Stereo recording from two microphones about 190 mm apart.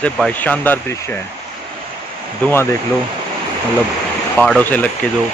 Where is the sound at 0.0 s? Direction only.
5° left (ahead or behind).